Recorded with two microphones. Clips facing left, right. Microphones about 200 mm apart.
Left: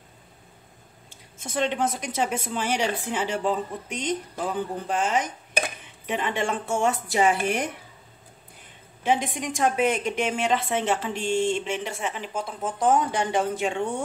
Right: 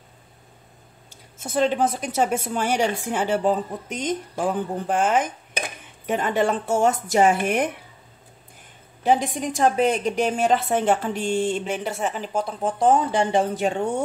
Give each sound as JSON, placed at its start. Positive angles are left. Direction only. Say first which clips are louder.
{"t": 1.4, "sound": "a woman's voice", "louder": "right 4 dB", "side_deg": -40}
{"t": 9.0, "sound": "a woman's voice", "louder": "right 4 dB", "side_deg": -40}